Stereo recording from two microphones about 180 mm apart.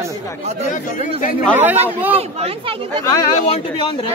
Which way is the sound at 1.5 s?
10° right (ahead or behind).